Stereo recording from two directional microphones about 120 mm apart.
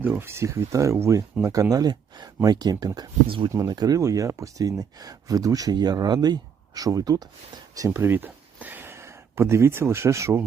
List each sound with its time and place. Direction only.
0.0 s speech: 15° right (ahead or behind)